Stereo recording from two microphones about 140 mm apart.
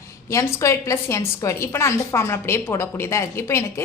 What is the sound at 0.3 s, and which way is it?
A woman's voice, 20° left (ahead or behind).